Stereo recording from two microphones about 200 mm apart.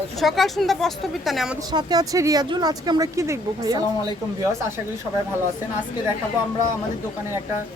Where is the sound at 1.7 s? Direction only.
20° right (ahead or behind).